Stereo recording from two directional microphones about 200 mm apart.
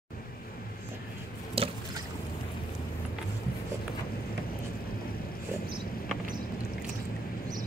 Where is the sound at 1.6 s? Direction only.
30° right (ahead or behind).